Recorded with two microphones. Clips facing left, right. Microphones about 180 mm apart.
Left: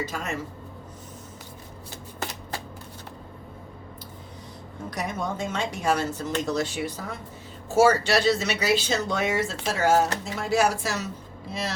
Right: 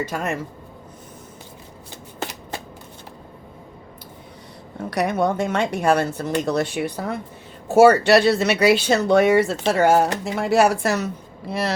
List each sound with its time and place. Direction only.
0.0 s speech: 60° right (ahead or behind)
4.9 s speech: 70° right (ahead or behind)